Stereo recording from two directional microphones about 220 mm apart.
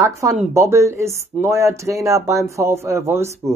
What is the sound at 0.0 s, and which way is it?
Speech, 15° right (ahead or behind).